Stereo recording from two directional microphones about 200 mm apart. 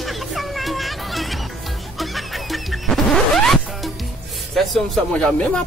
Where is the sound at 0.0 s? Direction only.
Centre (ahead or behind).